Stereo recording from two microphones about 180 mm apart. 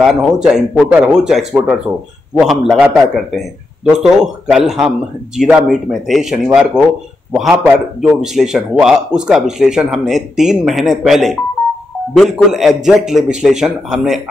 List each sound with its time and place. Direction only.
0.0 s a man's voice: centre (ahead or behind)